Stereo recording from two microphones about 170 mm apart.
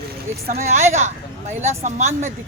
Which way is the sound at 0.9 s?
40° right (ahead or behind).